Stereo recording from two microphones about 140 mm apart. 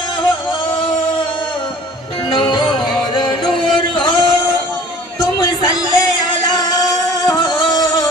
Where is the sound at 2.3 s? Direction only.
35° left (ahead or behind).